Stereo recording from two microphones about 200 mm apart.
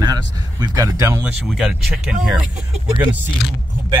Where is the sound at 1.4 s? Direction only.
Centre (ahead or behind).